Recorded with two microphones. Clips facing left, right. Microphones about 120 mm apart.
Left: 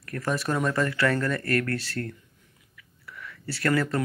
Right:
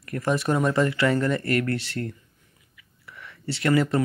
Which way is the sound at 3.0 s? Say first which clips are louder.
Right 2 dB; 20° right (ahead or behind).